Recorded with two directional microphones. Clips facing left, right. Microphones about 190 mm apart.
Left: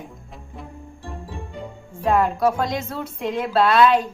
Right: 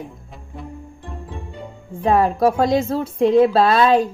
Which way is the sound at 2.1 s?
40° right (ahead or behind).